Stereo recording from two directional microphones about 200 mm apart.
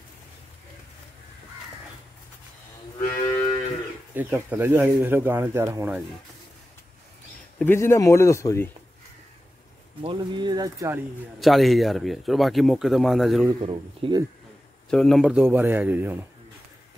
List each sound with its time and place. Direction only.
3.1 s moo: 15° left (ahead or behind)
4.1 s speech: 10° right (ahead or behind)
7.5 s a man's voice: 10° left (ahead or behind)
10.0 s speech: 20° right (ahead or behind)
11.3 s speech: centre (ahead or behind)
13.5 s speech: 25° right (ahead or behind)
14.9 s speech: 5° left (ahead or behind)